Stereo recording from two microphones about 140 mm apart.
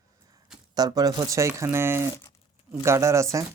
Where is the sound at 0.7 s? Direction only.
25° right (ahead or behind).